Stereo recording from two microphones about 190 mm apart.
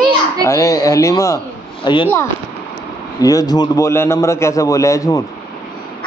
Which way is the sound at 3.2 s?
20° left (ahead or behind).